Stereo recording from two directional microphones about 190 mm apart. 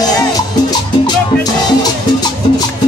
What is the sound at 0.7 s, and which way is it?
Music, 20° left (ahead or behind).